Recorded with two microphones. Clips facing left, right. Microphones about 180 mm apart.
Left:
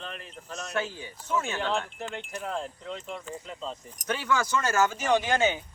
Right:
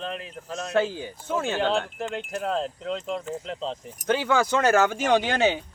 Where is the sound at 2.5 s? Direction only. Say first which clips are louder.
Right 7 dB; 90° right.